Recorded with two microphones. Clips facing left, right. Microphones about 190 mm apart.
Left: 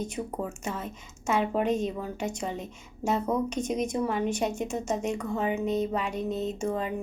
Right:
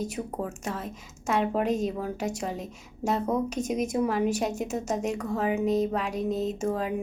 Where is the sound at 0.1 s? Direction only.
Centre (ahead or behind).